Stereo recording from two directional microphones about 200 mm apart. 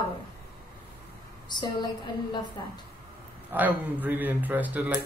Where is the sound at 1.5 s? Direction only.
20° left (ahead or behind).